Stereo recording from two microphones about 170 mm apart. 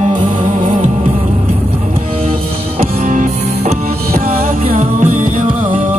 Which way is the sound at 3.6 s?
40° right (ahead or behind).